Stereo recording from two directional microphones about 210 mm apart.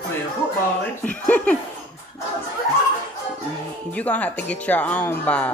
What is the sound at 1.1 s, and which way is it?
Speech, 5° left (ahead or behind).